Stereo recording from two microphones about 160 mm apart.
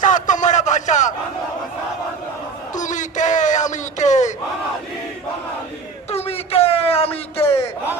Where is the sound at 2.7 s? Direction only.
50° left (ahead or behind).